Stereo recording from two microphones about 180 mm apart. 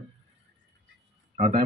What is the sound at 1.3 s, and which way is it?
Speech, 35° right (ahead or behind).